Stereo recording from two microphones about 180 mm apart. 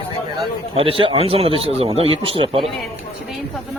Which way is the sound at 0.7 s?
30° right (ahead or behind).